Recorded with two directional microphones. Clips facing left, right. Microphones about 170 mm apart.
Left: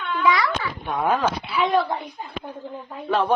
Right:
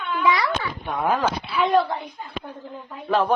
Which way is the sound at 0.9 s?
5° right (ahead or behind).